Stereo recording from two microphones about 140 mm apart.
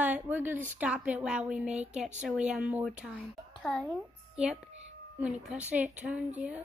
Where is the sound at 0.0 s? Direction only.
10° right (ahead or behind).